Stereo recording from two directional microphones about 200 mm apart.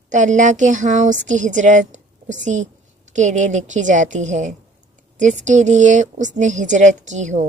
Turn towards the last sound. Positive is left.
turn(degrees=-35)  # may be behind; listen again after turning